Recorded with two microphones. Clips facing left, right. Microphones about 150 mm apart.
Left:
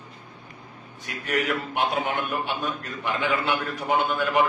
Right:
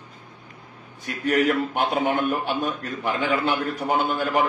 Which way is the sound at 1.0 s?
40° right (ahead or behind).